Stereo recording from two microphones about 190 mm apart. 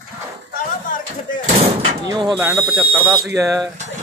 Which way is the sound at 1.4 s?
35° right (ahead or behind).